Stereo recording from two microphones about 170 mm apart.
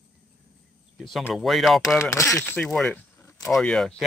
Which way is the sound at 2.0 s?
15° left (ahead or behind).